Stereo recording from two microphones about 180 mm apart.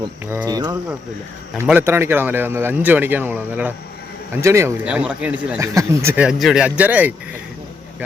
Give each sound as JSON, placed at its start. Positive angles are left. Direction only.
{"t": 0.3, "sound": "speech", "side_deg": -15}
{"t": 1.6, "sound": "speech", "side_deg": -10}
{"t": 6.2, "sound": "speech", "side_deg": -5}